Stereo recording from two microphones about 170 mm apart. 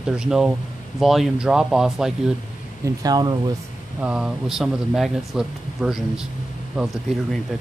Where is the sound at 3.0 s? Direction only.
25° right (ahead or behind).